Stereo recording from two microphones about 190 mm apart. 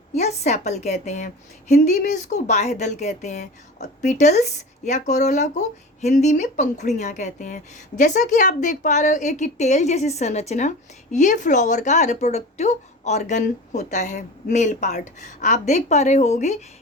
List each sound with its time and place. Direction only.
0.1 s a woman's voice: 35° left (ahead or behind)